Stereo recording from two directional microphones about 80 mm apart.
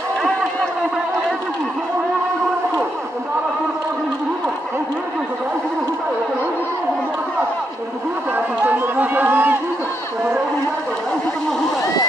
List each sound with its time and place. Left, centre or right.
8.4 s run: right